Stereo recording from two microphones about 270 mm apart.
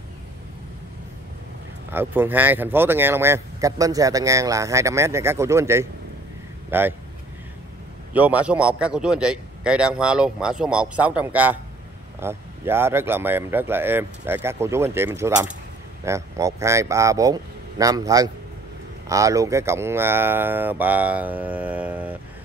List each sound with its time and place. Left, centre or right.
1.9 s speech: centre
8.1 s a man's voice: centre